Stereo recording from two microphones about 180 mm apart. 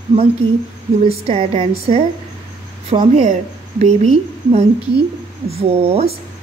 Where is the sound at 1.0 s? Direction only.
35° right (ahead or behind).